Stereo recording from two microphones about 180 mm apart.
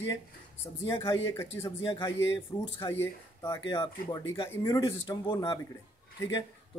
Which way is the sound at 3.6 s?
25° left (ahead or behind).